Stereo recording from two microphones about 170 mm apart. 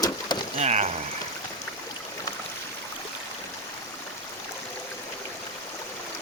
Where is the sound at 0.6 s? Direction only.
40° right (ahead or behind).